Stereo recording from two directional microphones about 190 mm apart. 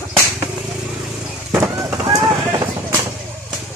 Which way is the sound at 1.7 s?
15° right (ahead or behind).